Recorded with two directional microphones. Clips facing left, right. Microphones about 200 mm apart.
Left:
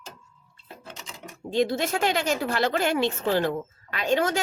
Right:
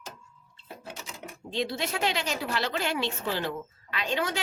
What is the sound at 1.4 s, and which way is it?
Speech, 45° left (ahead or behind).